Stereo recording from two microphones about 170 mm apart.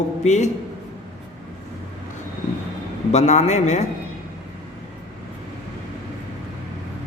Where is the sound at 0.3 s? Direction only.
45° left (ahead or behind).